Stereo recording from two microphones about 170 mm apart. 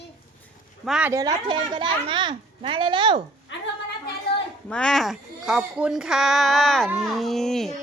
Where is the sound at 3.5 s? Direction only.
90° left.